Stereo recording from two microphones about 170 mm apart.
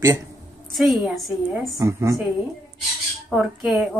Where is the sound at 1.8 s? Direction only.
20° right (ahead or behind).